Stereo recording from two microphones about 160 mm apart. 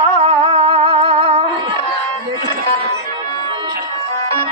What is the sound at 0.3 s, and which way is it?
Music, 35° right (ahead or behind).